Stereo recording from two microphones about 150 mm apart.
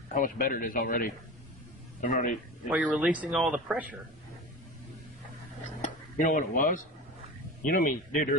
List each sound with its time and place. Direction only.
0.1 s a man's voice: 65° left (ahead or behind)
2.7 s speech: 10° right (ahead or behind)
5.8 s dishes: 60° left (ahead or behind)
7.6 s speech: 65° left (ahead or behind)